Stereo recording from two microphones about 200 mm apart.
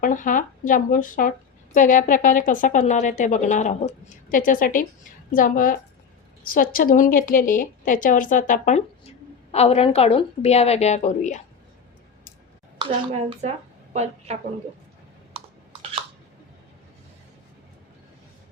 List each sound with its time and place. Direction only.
0.0 s a woman's voice: 40° left (ahead or behind)
13.9 s a woman's voice: 35° right (ahead or behind)
15.3 s a sound: 25° right (ahead or behind)